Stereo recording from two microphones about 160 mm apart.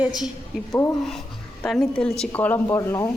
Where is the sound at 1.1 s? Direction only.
Centre (ahead or behind); by 3.1 s 20° left (ahead or behind).